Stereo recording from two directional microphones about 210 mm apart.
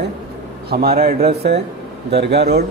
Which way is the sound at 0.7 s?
45° right (ahead or behind).